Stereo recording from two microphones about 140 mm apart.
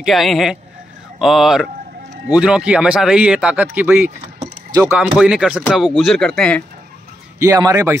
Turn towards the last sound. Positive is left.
turn(degrees=-20)  # may be behind; listen again after turning